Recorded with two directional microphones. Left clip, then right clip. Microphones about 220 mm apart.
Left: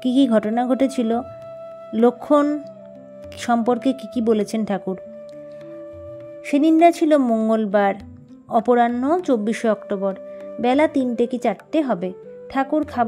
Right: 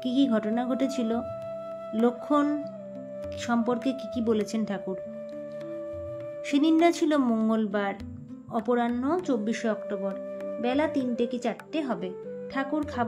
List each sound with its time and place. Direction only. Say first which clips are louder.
0.0 s speech: left 8 dB; 40° left (ahead or behind)
6.5 s speech: left 8 dB; 35° left (ahead or behind)